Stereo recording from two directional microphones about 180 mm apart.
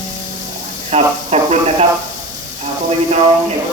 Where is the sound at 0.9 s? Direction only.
35° right (ahead or behind).